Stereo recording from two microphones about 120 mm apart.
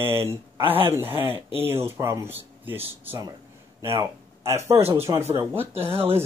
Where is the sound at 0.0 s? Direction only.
20° right (ahead or behind).